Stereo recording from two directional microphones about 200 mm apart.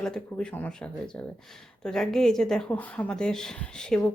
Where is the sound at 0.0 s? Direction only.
5° left (ahead or behind).